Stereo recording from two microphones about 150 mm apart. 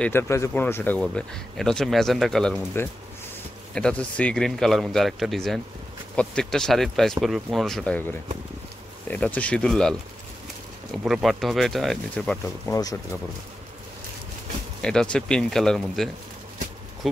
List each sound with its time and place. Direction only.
0.0 s speech: 15° left (ahead or behind)
3.7 s speech: 5° left (ahead or behind)
12.6 s speech: 20° left (ahead or behind)
14.8 s speech: 5° left (ahead or behind)